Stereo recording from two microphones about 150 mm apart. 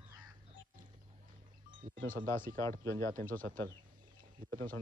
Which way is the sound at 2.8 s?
20° left (ahead or behind).